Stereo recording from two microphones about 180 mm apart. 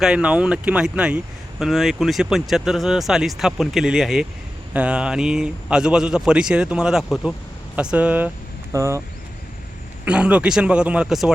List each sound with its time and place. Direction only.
0.0 s speech: 5° right (ahead or behind)
10.1 s speech: 5° right (ahead or behind)